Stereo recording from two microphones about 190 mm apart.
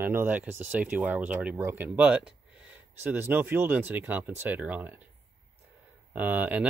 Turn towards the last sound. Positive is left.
turn(degrees=-10)  # may be behind; listen again after turning